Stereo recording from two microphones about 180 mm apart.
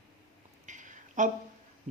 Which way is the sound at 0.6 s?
45° right (ahead or behind).